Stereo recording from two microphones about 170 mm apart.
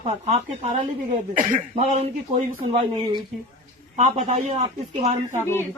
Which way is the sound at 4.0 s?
45° right (ahead or behind).